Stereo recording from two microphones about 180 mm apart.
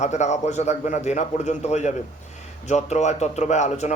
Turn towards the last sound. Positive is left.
turn(degrees=40)  # may be behind; listen again after turning